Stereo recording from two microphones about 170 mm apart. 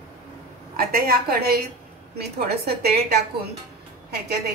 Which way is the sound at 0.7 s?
60° right (ahead or behind).